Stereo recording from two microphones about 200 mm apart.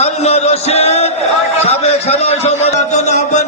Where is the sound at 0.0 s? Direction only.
30° left (ahead or behind).